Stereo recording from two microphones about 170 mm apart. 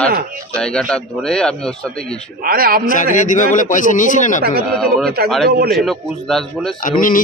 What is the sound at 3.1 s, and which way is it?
Speech, 50° left (ahead or behind).